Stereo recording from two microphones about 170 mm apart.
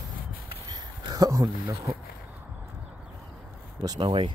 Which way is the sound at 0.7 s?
25° right (ahead or behind).